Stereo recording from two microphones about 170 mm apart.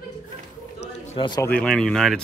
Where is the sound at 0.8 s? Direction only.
40° left (ahead or behind).